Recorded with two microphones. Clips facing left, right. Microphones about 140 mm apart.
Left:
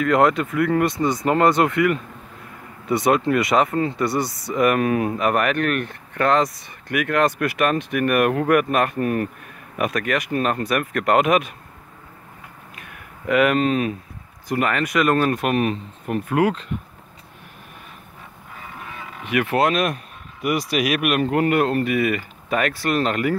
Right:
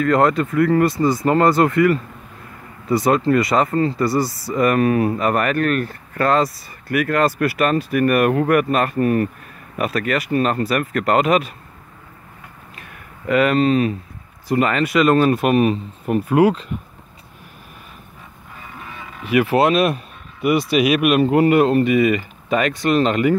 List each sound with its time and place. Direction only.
0.0 s speech: centre (ahead or behind)
12.7 s a sound: 5° left (ahead or behind)
14.5 s speech: centre (ahead or behind)
19.5 s speech: 30° right (ahead or behind)